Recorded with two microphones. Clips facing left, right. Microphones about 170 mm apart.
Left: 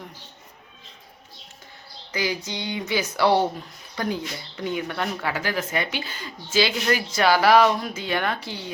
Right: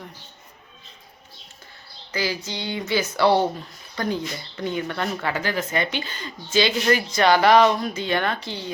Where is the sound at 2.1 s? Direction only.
15° left (ahead or behind).